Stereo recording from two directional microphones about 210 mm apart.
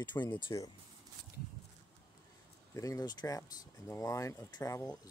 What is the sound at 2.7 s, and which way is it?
Speech, 15° left (ahead or behind).